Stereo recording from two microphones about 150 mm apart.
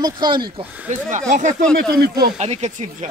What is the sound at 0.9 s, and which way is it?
Speech, 50° right (ahead or behind).